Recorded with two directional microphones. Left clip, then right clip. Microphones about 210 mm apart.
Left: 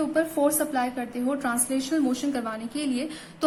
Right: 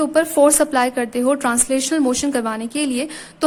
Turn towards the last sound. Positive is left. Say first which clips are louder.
# right 7 dB
turn(degrees=-40)  # may be behind; listen again after turning